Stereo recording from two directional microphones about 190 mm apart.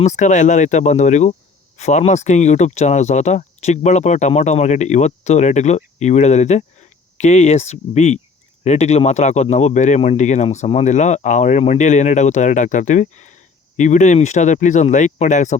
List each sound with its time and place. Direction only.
0.0 s speech: 40° left (ahead or behind)